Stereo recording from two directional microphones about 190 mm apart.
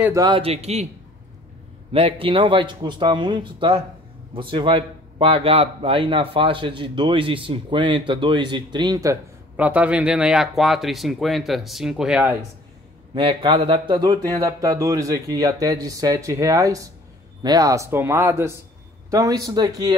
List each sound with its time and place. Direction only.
0.0 s speech: 20° right (ahead or behind); by 0.8 s 35° right (ahead or behind)
1.9 s speech: 30° right (ahead or behind); by 12.4 s 10° right (ahead or behind)
13.1 s speech: 25° right (ahead or behind)